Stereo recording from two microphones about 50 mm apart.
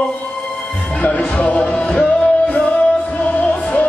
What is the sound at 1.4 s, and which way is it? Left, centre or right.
Music, left.